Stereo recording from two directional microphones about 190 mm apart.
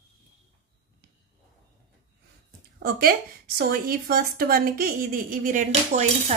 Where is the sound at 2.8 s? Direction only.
50° right (ahead or behind).